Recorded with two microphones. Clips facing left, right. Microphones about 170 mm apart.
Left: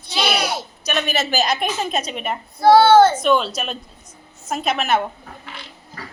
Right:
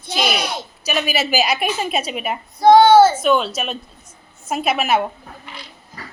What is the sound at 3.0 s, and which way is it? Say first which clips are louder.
A woman's voice: right 1 dB; 5° right (ahead or behind).